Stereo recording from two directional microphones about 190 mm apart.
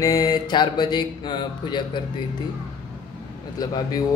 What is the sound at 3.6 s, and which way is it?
Mantra, 20° left (ahead or behind).